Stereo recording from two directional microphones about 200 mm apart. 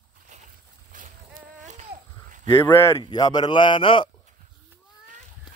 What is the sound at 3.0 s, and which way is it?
A man's voice, 20° left (ahead or behind).